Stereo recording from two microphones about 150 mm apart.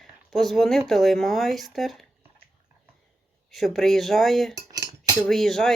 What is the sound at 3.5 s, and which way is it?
Speech, centre (ahead or behind).